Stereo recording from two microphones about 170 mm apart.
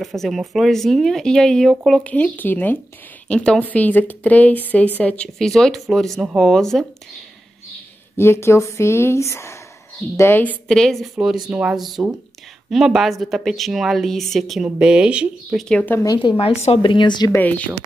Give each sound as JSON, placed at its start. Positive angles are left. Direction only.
{"t": 0.0, "sound": "speech", "side_deg": 0}
{"t": 8.2, "sound": "speech", "side_deg": 15}
{"t": 15.7, "sound": "a woman's voice", "side_deg": 10}
{"t": 17.3, "sound": "speech", "side_deg": 10}